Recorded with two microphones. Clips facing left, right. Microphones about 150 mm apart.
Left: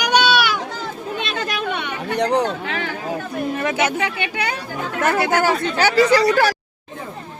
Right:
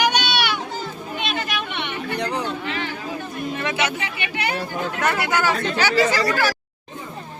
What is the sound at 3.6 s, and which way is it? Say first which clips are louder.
Speech: left 3 dB; 45° left (ahead or behind).